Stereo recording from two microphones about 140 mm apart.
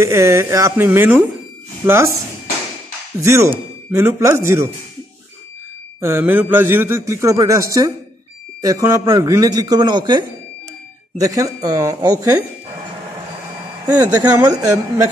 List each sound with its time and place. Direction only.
0.0 s a man's voice: 20° right (ahead or behind)
3.2 s a man's voice: 20° right (ahead or behind)
5.9 s a man's voice: 15° right (ahead or behind)
13.8 s a man's voice: 30° right (ahead or behind)